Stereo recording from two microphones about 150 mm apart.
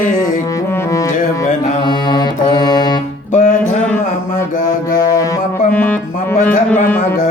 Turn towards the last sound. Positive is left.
turn(degrees=10)  # may be behind; listen again after turning